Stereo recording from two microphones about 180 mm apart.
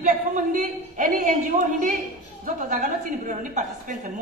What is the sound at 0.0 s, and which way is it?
A woman's voice, 45° right (ahead or behind).